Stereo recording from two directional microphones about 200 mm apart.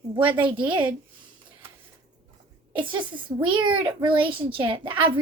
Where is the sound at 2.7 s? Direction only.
25° right (ahead or behind).